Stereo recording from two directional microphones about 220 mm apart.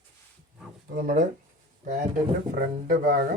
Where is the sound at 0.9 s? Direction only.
35° right (ahead or behind).